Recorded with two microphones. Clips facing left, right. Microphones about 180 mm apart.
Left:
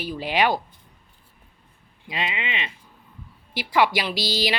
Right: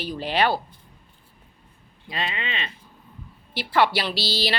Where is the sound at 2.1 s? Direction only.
15° left (ahead or behind).